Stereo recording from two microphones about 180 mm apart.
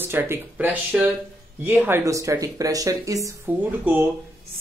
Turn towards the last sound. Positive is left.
turn(degrees=-10)  # may be behind; listen again after turning